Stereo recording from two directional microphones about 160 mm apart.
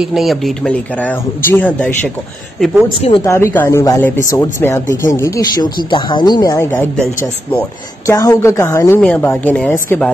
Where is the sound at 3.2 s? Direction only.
15° left (ahead or behind).